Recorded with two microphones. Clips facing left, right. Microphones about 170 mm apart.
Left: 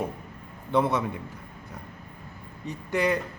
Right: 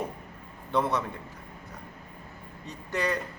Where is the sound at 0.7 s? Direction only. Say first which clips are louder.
Left 3 dB; 20° left (ahead or behind).